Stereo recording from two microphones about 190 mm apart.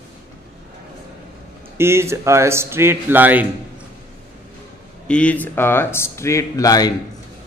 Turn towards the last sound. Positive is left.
turn(degrees=20)  # may be behind; listen again after turning